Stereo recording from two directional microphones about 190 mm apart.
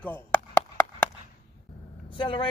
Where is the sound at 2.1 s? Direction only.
25° left (ahead or behind).